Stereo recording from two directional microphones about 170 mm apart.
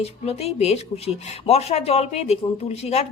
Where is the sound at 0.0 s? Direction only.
35° left (ahead or behind).